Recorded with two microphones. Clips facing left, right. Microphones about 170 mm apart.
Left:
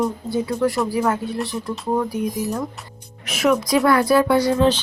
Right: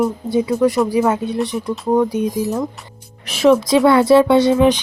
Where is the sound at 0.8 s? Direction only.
20° right (ahead or behind).